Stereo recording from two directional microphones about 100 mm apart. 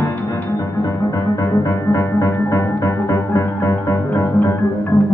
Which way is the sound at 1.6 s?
20° left (ahead or behind).